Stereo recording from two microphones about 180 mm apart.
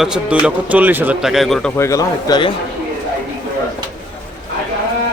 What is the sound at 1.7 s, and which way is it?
Speech, 15° left (ahead or behind).